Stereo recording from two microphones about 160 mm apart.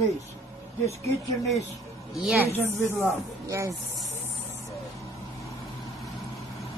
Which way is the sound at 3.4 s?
20° right (ahead or behind).